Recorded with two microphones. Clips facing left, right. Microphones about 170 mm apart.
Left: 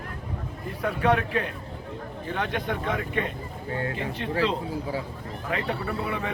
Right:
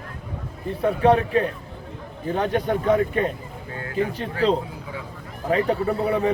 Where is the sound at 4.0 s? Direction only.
40° right (ahead or behind).